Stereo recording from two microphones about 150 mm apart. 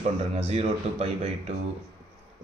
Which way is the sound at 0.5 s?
45° right (ahead or behind).